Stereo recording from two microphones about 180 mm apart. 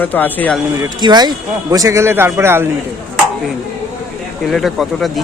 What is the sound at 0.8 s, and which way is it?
A man's voice, 25° right (ahead or behind).